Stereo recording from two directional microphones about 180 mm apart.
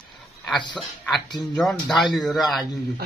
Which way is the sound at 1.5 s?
Centre (ahead or behind).